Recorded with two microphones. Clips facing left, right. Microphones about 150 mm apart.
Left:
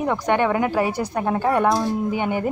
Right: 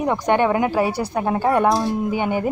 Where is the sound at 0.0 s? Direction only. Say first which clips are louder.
Right 2 dB; 15° right (ahead or behind).